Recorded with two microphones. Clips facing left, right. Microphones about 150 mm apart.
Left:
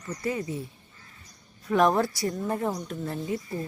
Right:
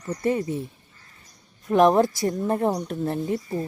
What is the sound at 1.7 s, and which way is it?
Speech, 20° right (ahead or behind).